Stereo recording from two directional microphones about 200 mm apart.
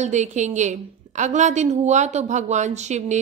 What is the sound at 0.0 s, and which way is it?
A woman's voice, 35° right (ahead or behind).